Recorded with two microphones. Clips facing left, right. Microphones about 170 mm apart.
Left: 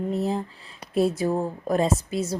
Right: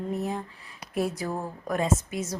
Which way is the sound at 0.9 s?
25° left (ahead or behind).